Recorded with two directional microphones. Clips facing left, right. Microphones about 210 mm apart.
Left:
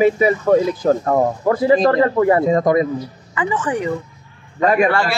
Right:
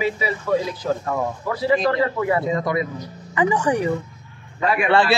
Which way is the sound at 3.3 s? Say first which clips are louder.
Right 2 dB; 15° right (ahead or behind).